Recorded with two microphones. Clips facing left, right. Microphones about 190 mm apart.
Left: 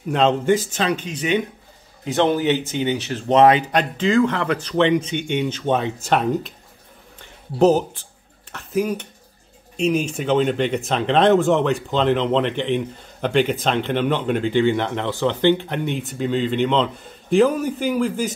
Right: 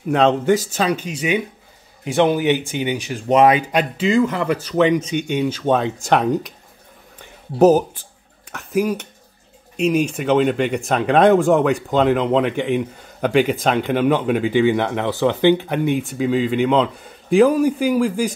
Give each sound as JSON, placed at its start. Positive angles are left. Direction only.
{"t": 0.1, "sound": "speech", "side_deg": -10}
{"t": 5.7, "sound": "speech", "side_deg": -40}
{"t": 7.2, "sound": "a sound", "side_deg": -10}
{"t": 9.8, "sound": "speech", "side_deg": -10}